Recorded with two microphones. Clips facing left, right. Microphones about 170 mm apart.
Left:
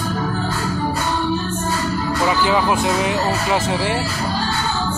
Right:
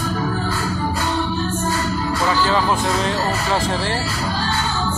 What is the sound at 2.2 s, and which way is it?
Speech, 15° left (ahead or behind).